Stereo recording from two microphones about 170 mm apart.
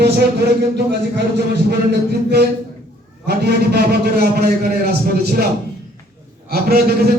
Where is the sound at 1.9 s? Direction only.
75° right (ahead or behind).